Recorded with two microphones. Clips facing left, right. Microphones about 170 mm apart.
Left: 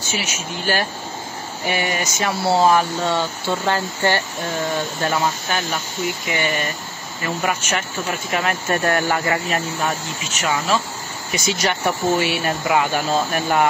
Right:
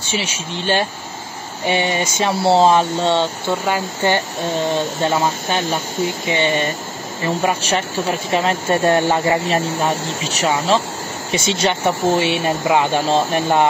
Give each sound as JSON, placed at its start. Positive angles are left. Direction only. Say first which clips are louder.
{"t": 0.0, "sound": "speech", "louder": "right 2 dB", "side_deg": -30}
{"t": 3.6, "sound": "speech", "louder": "right 1 dB", "side_deg": -15}
{"t": 9.8, "sound": "speech", "louder": "right 4 dB", "side_deg": -35}